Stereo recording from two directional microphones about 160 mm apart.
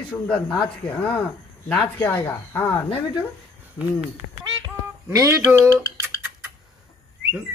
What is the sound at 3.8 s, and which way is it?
Speech, 25° left (ahead or behind).